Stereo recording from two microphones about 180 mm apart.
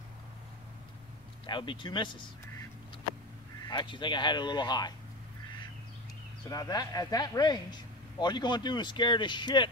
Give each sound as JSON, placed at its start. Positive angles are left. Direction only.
{"t": 1.4, "sound": "speech", "side_deg": 25}
{"t": 3.6, "sound": "speech", "side_deg": 25}
{"t": 6.4, "sound": "speech", "side_deg": 20}